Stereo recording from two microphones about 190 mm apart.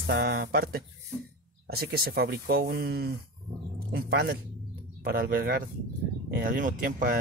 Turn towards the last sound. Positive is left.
turn(degrees=-50)  # may be behind; listen again after turning